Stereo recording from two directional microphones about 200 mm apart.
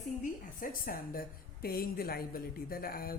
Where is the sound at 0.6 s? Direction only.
45° left (ahead or behind).